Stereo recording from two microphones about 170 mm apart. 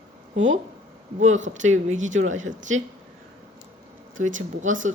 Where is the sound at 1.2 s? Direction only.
45° right (ahead or behind).